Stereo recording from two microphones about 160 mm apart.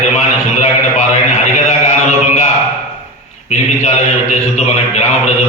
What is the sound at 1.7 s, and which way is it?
Mantra, 45° left (ahead or behind).